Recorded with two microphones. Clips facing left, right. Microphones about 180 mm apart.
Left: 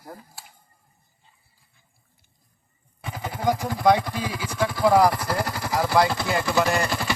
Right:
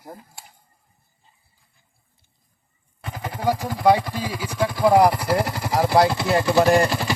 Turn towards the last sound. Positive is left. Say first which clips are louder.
# right 6 dB
turn(degrees=-45)  # may be behind; listen again after turning